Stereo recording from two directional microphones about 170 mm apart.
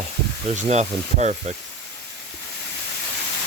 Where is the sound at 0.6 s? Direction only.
45° right (ahead or behind).